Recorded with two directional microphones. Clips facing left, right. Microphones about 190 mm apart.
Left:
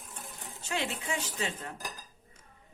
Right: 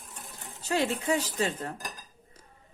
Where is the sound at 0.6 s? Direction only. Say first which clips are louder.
Right 7 dB; 40° right (ahead or behind).